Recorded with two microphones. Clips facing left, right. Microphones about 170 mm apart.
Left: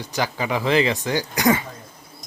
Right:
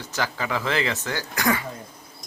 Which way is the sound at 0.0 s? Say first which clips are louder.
Left 3 dB; 15° left (ahead or behind).